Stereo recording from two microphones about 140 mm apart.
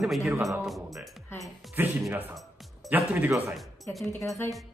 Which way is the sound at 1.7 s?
15° right (ahead or behind).